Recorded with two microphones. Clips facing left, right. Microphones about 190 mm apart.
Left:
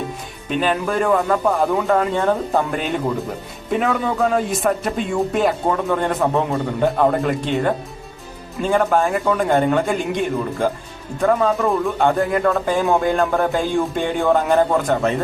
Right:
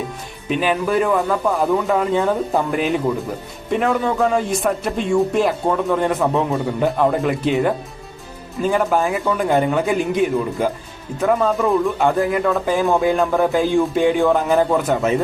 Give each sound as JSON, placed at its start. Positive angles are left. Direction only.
{"t": 0.4, "sound": "speech", "side_deg": -5}